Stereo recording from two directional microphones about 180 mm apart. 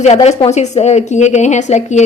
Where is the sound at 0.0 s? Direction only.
40° left (ahead or behind).